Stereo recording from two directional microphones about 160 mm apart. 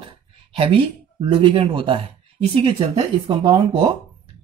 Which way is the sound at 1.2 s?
30° right (ahead or behind).